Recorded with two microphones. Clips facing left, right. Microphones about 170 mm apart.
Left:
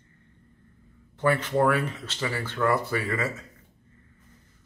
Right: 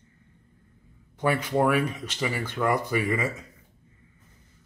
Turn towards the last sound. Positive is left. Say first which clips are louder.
# right 2 dB
turn(degrees=-15)  # may be behind; listen again after turning